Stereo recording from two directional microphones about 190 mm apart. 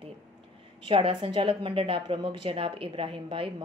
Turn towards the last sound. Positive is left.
turn(degrees=-25)  # may be behind; listen again after turning